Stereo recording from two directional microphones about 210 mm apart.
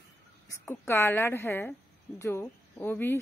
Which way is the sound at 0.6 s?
10° left (ahead or behind).